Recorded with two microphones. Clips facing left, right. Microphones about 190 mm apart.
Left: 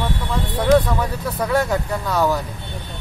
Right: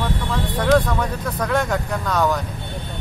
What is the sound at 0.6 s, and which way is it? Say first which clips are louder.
Speech: left 2 dB; 5° left (ahead or behind).